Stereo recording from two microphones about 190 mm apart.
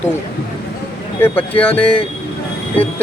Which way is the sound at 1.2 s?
10° left (ahead or behind).